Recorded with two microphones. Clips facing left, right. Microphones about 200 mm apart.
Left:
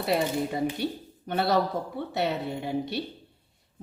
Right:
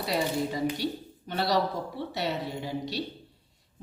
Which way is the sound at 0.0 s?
55° left (ahead or behind).